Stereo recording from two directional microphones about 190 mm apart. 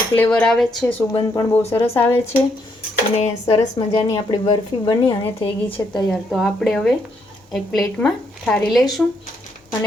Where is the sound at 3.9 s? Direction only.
20° left (ahead or behind).